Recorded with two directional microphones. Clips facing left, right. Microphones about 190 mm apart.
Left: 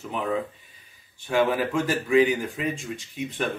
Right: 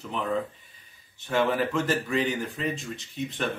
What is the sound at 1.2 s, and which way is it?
Speech, 10° left (ahead or behind).